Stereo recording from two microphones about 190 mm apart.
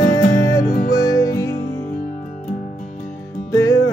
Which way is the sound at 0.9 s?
20° left (ahead or behind).